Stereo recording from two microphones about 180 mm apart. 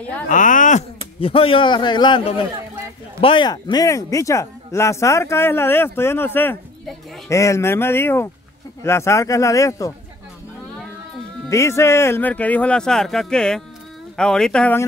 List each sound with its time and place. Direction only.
0.3 s speech: 45° left (ahead or behind)
1.2 s a man's voice: 30° left (ahead or behind)
3.7 s speech: 20° left (ahead or behind)
11.4 s speech: 15° left (ahead or behind)